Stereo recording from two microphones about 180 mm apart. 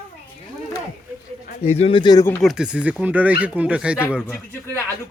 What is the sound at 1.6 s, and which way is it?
Speech, 35° left (ahead or behind).